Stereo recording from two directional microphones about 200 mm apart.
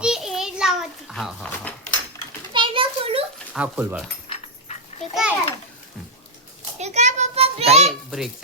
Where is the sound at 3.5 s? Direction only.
10° right (ahead or behind).